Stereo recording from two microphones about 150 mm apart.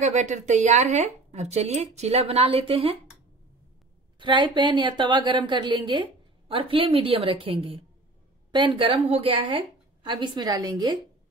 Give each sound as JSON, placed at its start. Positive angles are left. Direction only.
{"t": 0.0, "sound": "a woman's voice", "side_deg": -50}
{"t": 4.2, "sound": "a woman's voice", "side_deg": -30}